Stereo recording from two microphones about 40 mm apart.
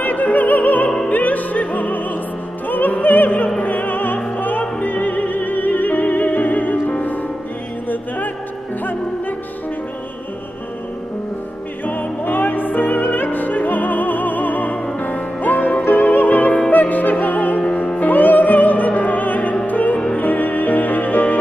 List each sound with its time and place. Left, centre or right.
0.0 s opera: left
0.8 s opera: left
1.1 s opera: left
11.8 s music: left